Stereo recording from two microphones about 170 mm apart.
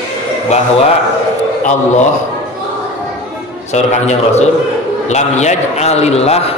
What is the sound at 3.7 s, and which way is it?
A man's voice, 40° left (ahead or behind).